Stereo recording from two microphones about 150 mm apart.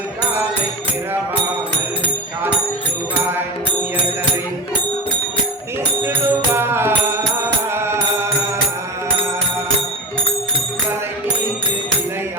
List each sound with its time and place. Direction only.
6.1 s music: 15° right (ahead or behind)